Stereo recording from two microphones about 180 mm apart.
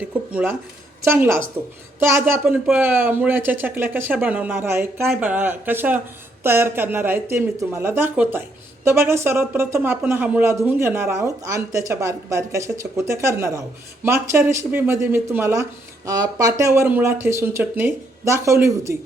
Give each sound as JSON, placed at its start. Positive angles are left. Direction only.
{"t": 0.0, "sound": "speech", "side_deg": -5}